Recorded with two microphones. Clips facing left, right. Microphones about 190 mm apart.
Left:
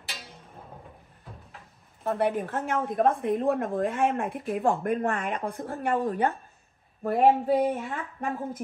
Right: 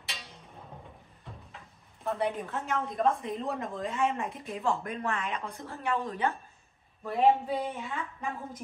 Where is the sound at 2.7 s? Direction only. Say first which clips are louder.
Left 3 dB; 55° left (ahead or behind).